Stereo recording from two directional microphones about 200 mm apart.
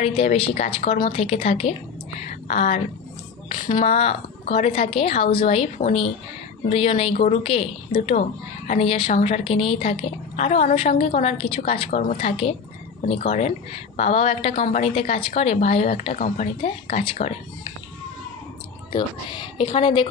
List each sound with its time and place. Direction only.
0.0 s a woman's voice: 30° left (ahead or behind)
19.6 s a woman's voice: 30° left (ahead or behind)